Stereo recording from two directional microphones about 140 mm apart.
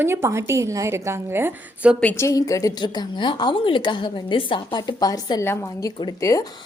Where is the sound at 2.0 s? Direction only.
15° left (ahead or behind).